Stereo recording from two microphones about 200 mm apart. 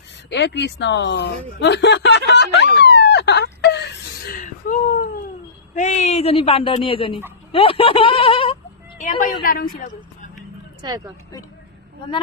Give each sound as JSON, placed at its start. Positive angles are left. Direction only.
{"t": 0.3, "sound": "speech", "side_deg": 60}
{"t": 2.8, "sound": "whimper", "side_deg": 60}
{"t": 4.4, "sound": "whimper", "side_deg": 40}
{"t": 5.7, "sound": "speech", "side_deg": 35}
{"t": 9.0, "sound": "a woman's voice", "side_deg": 40}
{"t": 10.8, "sound": "a woman's voice", "side_deg": -20}